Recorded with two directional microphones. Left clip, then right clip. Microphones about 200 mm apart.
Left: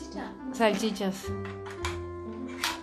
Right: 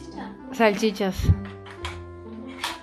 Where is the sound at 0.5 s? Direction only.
20° right (ahead or behind).